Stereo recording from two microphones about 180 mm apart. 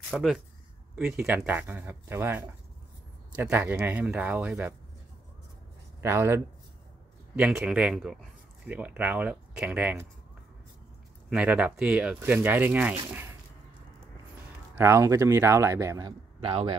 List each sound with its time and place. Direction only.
0.1 s speech: centre (ahead or behind)
5.9 s speech: 15° right (ahead or behind)
11.2 s speech: 5° right (ahead or behind)
14.8 s speech: 15° right (ahead or behind)